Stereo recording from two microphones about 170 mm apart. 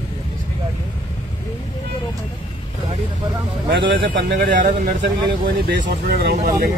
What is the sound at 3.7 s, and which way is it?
Speech, 90° right.